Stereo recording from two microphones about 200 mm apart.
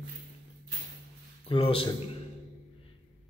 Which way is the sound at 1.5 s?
25° left (ahead or behind).